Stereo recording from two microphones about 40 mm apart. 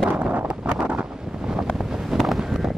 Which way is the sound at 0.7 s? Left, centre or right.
Right.